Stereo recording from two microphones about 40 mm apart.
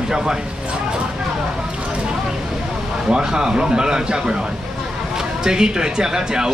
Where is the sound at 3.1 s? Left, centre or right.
Centre.